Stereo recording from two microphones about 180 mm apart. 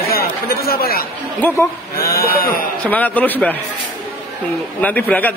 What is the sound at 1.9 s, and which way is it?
Speech, 55° left (ahead or behind).